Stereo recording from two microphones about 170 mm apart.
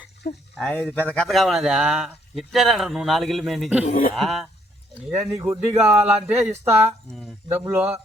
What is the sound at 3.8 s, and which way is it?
Speech, 45° left (ahead or behind).